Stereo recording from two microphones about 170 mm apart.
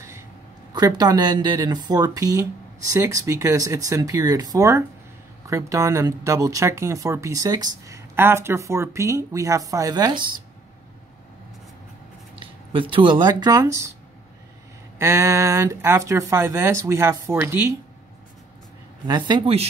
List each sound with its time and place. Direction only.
0.7 s speech: 25° right (ahead or behind)
12.4 s speech: 30° right (ahead or behind)
15.0 s speech: 15° right (ahead or behind)
19.0 s speech: 25° right (ahead or behind)